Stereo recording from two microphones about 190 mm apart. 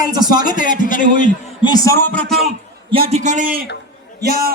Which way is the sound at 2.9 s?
30° right (ahead or behind).